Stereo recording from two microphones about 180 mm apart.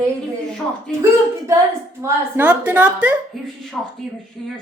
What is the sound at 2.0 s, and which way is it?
A woman's voice, 15° right (ahead or behind).